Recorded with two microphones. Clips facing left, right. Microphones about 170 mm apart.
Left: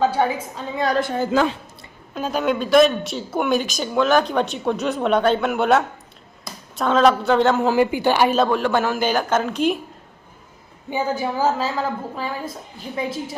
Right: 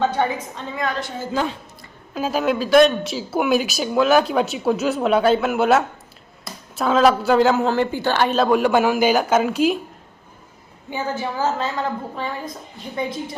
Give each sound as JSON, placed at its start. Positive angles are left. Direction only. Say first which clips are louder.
{"t": 0.0, "sound": "a woman's voice", "louder": "left 1 dB", "side_deg": 10}
{"t": 0.9, "sound": "a woman's voice", "louder": "left 5 dB", "side_deg": 60}
{"t": 2.1, "sound": "speech", "louder": "right 1 dB", "side_deg": -5}
{"t": 6.4, "sound": "a sound", "louder": "right 1 dB", "side_deg": -5}
{"t": 7.3, "sound": "speech", "louder": "right 1 dB", "side_deg": -5}
{"t": 7.7, "sound": "a woman's voice", "louder": "left 2 dB", "side_deg": 10}
{"t": 8.4, "sound": "speech", "louder": "right 3 dB", "side_deg": -10}
{"t": 10.9, "sound": "a woman's voice", "louder": "left 2 dB", "side_deg": 10}